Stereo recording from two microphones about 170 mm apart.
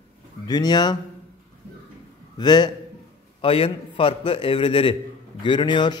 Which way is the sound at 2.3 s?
25° left (ahead or behind).